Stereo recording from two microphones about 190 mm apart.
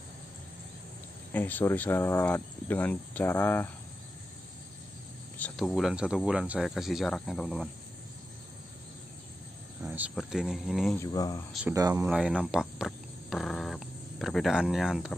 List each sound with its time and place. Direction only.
1.3 s speech: 10° left (ahead or behind)
5.4 s speech: centre (ahead or behind)
9.8 s cricket: 10° right (ahead or behind)
10.1 s speech: centre (ahead or behind)
11.1 s speech: 20° left (ahead or behind)
11.7 s speech: 15° right (ahead or behind)
12.1 s speech: 5° right (ahead or behind)